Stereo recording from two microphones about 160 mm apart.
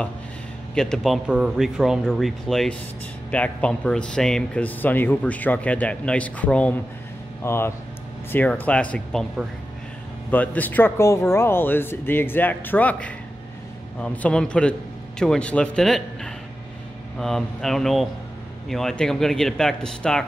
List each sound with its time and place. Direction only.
0.7 s a man's voice: 5° left (ahead or behind)